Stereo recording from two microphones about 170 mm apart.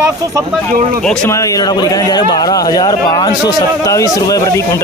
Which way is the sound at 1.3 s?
20° left (ahead or behind).